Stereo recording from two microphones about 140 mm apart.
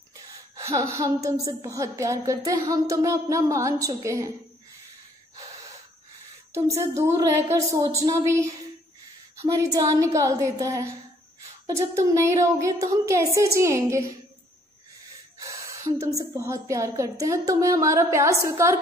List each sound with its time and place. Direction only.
0.6 s a woman's voice: 20° right (ahead or behind)
6.5 s a woman's voice: 20° right (ahead or behind)
15.3 s a woman's voice: 25° right (ahead or behind)